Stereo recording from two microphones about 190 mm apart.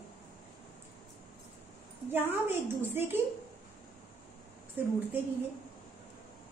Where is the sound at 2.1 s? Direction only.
10° right (ahead or behind).